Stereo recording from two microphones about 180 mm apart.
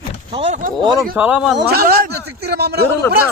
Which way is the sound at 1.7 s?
60° right (ahead or behind).